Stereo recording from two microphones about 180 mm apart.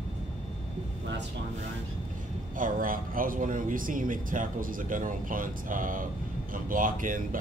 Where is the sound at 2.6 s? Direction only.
50° right (ahead or behind).